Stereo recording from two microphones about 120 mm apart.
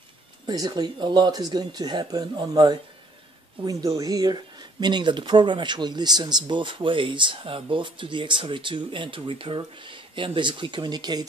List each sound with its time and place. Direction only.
0.5 s speech: 35° right (ahead or behind)